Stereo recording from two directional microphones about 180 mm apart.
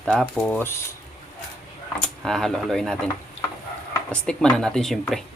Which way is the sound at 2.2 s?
5° left (ahead or behind).